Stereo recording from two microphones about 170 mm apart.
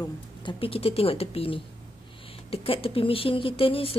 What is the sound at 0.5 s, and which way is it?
Speech, 30° left (ahead or behind).